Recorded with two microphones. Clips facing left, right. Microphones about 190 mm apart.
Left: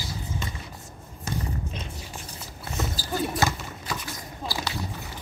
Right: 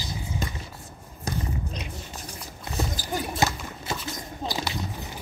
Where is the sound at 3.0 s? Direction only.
15° right (ahead or behind).